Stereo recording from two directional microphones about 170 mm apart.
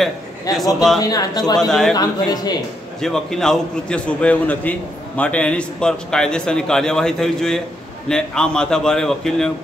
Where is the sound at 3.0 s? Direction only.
5° left (ahead or behind).